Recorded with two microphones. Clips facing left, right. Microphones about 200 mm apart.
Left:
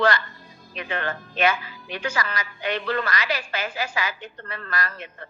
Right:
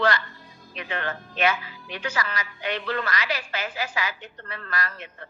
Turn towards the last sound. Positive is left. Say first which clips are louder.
# left 2 dB
turn(degrees=45)  # may be behind; listen again after turning